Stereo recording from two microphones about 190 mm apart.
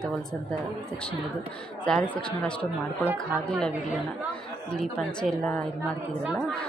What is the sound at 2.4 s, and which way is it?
A woman's voice, 5° left (ahead or behind).